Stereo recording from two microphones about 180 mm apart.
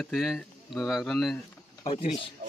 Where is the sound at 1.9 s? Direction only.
35° left (ahead or behind).